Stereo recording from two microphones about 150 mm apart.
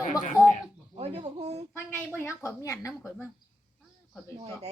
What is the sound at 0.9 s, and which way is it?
Speech, 45° right (ahead or behind).